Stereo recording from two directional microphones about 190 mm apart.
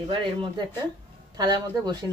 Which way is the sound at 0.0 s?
25° right (ahead or behind).